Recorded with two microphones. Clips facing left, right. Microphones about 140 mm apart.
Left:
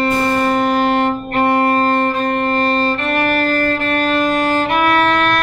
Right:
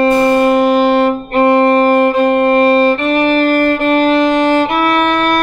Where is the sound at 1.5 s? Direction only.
25° right (ahead or behind).